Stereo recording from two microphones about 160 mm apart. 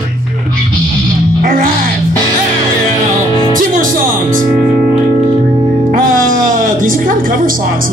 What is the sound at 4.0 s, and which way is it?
Speech, 55° right (ahead or behind).